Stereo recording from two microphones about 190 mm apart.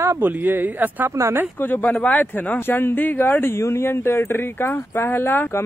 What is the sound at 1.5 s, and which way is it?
Speech, 10° left (ahead or behind).